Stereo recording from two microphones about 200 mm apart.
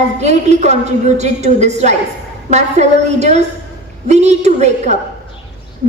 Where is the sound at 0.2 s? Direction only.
35° right (ahead or behind).